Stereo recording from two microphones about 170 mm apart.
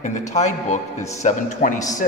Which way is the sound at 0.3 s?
40° left (ahead or behind).